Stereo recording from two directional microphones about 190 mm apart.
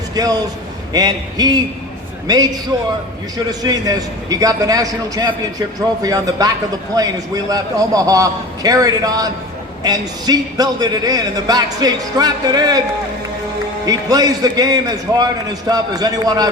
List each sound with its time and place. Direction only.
0.2 s a man's voice: 20° right (ahead or behind)
13.8 s a man's voice: 20° right (ahead or behind)